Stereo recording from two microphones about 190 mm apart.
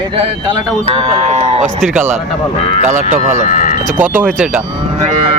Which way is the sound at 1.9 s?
10° right (ahead or behind).